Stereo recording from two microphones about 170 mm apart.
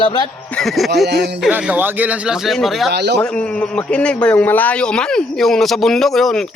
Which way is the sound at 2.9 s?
85° right.